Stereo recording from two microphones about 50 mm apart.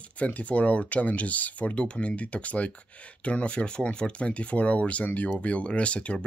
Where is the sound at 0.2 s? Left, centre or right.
Left.